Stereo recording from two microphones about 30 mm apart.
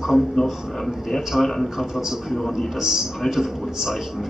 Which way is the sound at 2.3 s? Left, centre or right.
Centre.